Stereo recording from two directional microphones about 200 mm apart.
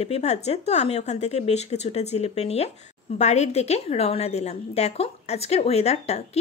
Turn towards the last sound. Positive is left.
turn(degrees=30)  # may be behind; listen again after turning